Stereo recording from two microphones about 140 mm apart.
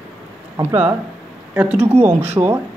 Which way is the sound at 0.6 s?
15° right (ahead or behind).